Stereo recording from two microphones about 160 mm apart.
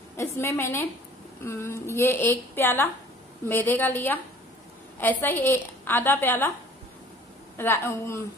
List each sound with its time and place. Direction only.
0.2 s a woman's voice: 15° left (ahead or behind)
7.5 s a woman's voice: 15° left (ahead or behind)